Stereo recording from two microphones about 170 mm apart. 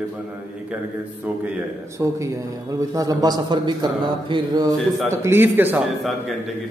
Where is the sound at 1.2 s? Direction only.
10° right (ahead or behind); by 4.7 s 25° right (ahead or behind).